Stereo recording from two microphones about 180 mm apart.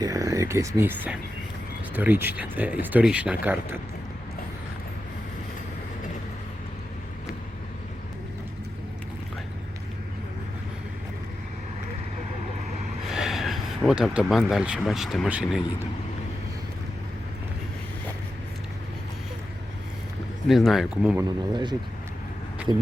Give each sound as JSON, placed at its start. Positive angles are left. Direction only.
{"t": 0.0, "sound": "speech", "side_deg": -20}
{"t": 13.1, "sound": "speech", "side_deg": 0}
{"t": 20.5, "sound": "speech", "side_deg": 0}
{"t": 21.2, "sound": "speech", "side_deg": -25}